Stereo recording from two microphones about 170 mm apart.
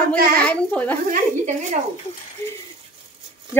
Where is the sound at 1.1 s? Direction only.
45° right (ahead or behind).